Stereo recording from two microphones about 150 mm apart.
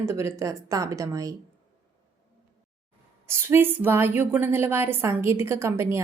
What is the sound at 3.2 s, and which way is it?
A woman's voice, 15° right (ahead or behind).